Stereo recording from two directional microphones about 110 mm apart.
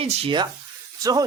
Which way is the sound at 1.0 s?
35° right (ahead or behind).